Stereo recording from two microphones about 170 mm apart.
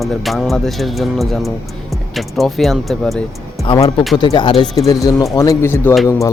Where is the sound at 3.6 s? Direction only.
30° left (ahead or behind).